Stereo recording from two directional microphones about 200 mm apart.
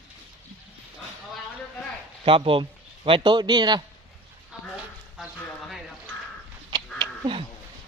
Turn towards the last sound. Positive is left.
turn(degrees=-25)  # may be behind; listen again after turning